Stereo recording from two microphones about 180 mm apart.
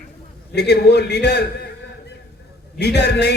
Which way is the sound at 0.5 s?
65° left (ahead or behind).